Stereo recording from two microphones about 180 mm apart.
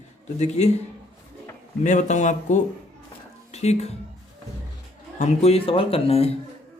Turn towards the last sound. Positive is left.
turn(degrees=35)  # may be behind; listen again after turning